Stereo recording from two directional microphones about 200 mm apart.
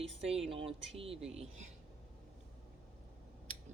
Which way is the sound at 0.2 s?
30° right (ahead or behind).